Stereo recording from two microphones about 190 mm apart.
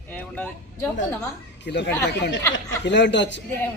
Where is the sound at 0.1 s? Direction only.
10° left (ahead or behind).